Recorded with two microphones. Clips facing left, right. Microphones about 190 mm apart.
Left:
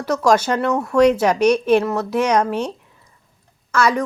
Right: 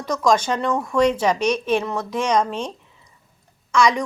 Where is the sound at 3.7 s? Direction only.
5° left (ahead or behind).